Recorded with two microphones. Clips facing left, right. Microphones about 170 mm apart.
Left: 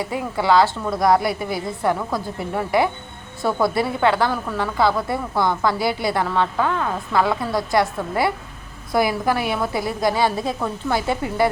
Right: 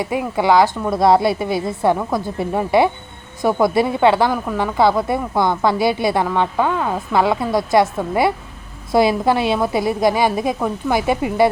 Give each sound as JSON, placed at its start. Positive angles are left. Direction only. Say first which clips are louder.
{"t": 0.0, "sound": "speech", "louder": "right 4 dB", "side_deg": -20}